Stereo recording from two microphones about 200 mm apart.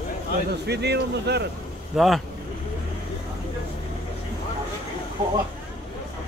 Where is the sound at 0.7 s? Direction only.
55° right (ahead or behind).